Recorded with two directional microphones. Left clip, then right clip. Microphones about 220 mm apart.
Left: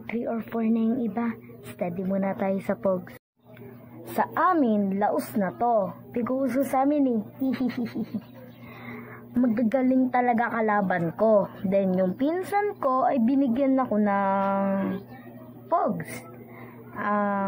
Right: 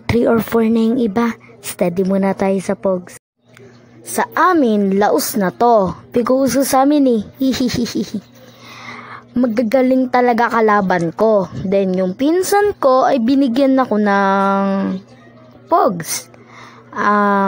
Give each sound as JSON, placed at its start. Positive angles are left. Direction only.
{"t": 0.0, "sound": "a woman's voice", "side_deg": -50}
{"t": 4.1, "sound": "a woman's voice", "side_deg": -45}